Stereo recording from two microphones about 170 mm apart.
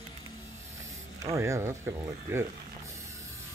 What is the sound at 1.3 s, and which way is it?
Speech, 15° right (ahead or behind).